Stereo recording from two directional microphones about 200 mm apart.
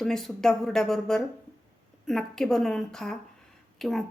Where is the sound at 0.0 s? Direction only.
Centre (ahead or behind).